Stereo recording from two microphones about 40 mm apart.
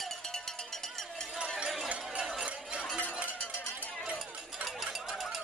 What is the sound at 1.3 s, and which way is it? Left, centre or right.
Run, right.